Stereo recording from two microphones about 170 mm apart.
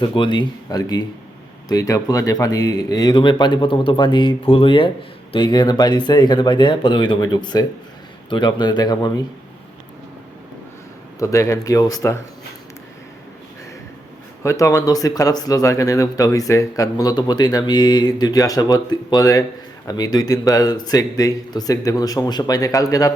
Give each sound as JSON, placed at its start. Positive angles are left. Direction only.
{"t": 0.0, "sound": "speech", "side_deg": 30}
{"t": 11.2, "sound": "speech", "side_deg": 20}
{"t": 14.4, "sound": "speech", "side_deg": 20}